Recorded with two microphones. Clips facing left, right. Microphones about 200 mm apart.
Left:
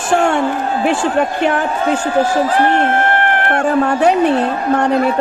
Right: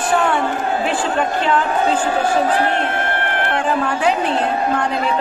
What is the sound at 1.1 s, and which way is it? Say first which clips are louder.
A man's voice: left 3 dB; 60° left (ahead or behind).